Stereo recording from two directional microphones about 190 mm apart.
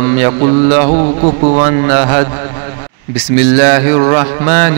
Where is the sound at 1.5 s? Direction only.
35° right (ahead or behind).